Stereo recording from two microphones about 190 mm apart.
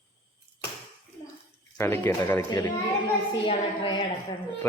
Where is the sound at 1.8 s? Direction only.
10° left (ahead or behind).